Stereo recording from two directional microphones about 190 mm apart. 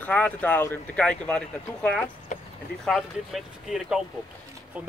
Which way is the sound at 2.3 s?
40° left (ahead or behind).